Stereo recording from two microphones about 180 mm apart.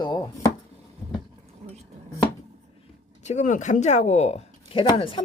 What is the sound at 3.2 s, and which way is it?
Speech, 40° left (ahead or behind).